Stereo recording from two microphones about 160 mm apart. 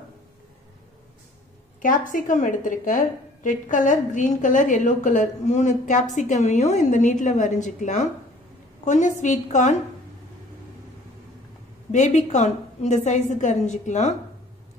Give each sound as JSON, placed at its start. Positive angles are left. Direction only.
{"t": 1.8, "sound": "a woman's voice", "side_deg": 55}
{"t": 11.9, "sound": "a woman's voice", "side_deg": 45}